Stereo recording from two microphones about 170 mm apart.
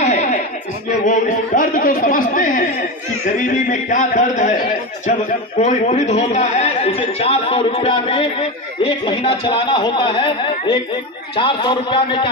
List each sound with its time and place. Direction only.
0.0 s music: 45° left (ahead or behind)
1.0 s a man's voice: 50° left (ahead or behind); by 12.3 s 30° left (ahead or behind)